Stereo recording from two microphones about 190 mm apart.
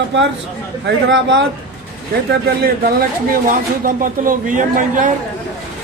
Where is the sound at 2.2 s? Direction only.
55° right (ahead or behind).